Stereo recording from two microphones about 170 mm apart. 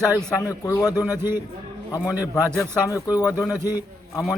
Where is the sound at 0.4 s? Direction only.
20° left (ahead or behind).